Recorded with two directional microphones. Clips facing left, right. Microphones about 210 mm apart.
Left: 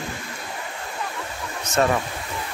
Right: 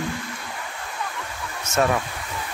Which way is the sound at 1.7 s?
25° right (ahead or behind).